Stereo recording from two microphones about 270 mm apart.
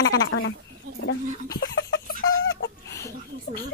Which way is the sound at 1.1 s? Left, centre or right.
Left.